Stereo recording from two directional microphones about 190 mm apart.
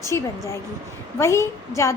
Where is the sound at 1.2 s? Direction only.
15° left (ahead or behind).